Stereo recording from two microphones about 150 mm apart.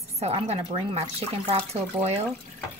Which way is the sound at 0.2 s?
45° right (ahead or behind).